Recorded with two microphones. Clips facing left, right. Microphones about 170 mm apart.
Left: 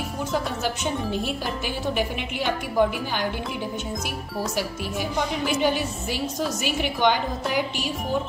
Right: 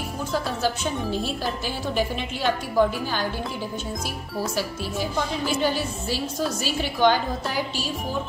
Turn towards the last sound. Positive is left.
turn(degrees=15)  # may be behind; listen again after turning